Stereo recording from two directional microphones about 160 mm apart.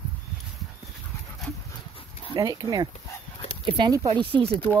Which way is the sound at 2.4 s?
20° right (ahead or behind).